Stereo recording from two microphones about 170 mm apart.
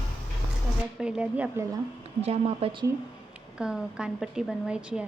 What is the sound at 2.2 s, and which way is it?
Speech, 35° right (ahead or behind).